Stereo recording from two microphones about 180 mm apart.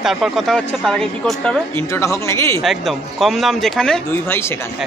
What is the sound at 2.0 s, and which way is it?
Speech, 15° left (ahead or behind).